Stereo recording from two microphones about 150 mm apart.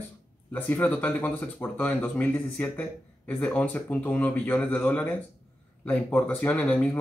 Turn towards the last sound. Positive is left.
turn(degrees=10)  # may be behind; listen again after turning